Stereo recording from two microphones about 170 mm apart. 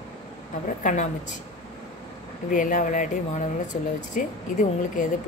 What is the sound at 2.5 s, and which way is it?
Speech, 50° left (ahead or behind).